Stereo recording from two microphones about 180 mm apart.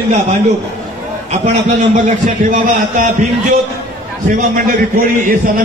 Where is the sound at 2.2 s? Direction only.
45° right (ahead or behind).